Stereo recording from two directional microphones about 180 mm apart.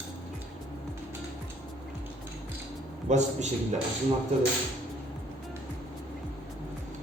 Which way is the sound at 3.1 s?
40° right (ahead or behind).